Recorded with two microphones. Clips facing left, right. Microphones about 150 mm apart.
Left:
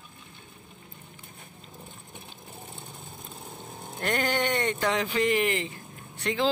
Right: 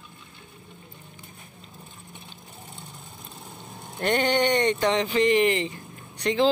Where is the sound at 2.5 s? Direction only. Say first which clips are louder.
Left 2 dB; 25° left (ahead or behind).